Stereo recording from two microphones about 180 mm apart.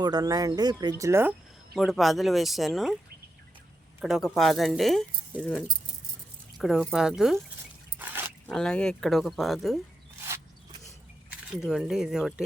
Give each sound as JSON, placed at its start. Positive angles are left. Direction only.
{"t": 0.0, "sound": "speech", "side_deg": -20}
{"t": 4.0, "sound": "speech", "side_deg": 0}
{"t": 6.6, "sound": "speech", "side_deg": -5}
{"t": 7.9, "sound": "dog", "side_deg": -10}
{"t": 8.4, "sound": "speech", "side_deg": 5}
{"t": 10.2, "sound": "a sound", "side_deg": -15}
{"t": 11.5, "sound": "speech", "side_deg": -5}